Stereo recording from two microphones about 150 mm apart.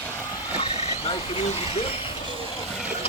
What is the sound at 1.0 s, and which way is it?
Speech, 45° left (ahead or behind).